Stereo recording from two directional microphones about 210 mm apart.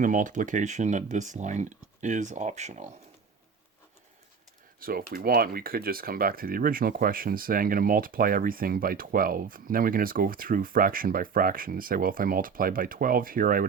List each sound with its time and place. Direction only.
0.0 s speech: 40° right (ahead or behind)
4.8 s speech: 45° right (ahead or behind)